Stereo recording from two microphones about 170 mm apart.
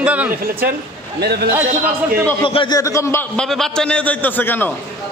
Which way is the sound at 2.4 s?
30° left (ahead or behind).